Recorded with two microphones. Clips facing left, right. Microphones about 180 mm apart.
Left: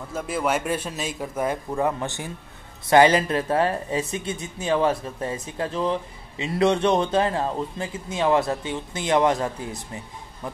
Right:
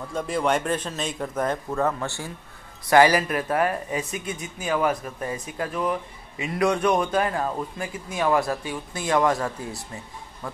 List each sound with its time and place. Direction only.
0.1 s speech: 5° left (ahead or behind); by 10.6 s 20° left (ahead or behind)